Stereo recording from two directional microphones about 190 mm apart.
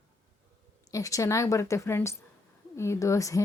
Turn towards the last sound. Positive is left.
turn(degrees=15)  # may be behind; listen again after turning